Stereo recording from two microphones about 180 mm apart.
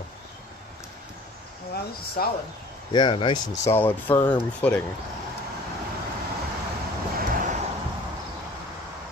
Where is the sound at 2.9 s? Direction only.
25° left (ahead or behind).